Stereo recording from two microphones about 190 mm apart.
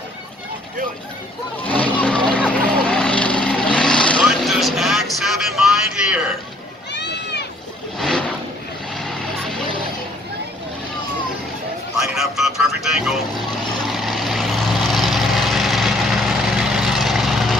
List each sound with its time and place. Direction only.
1.6 s vehicle: 10° left (ahead or behind)
6.9 s run: 65° left (ahead or behind)
8.0 s vehicle: 5° left (ahead or behind)
12.0 s music: centre (ahead or behind)
13.8 s vehicle: centre (ahead or behind)